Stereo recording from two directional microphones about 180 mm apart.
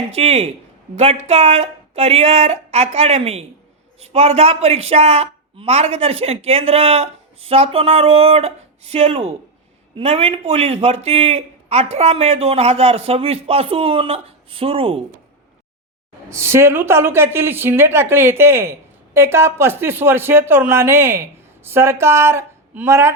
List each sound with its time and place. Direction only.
0.1 s a woman's voice: 35° right (ahead or behind)
16.3 s speech: 15° right (ahead or behind)